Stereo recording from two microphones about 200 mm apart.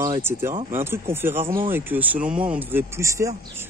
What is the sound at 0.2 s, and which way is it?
Speech, 10° right (ahead or behind).